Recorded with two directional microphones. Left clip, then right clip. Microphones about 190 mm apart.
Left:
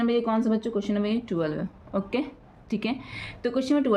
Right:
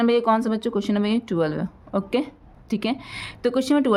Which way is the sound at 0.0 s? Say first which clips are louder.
Right 6 dB; 45° right (ahead or behind).